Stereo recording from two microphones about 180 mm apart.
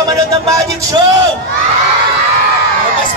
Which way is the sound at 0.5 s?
20° right (ahead or behind).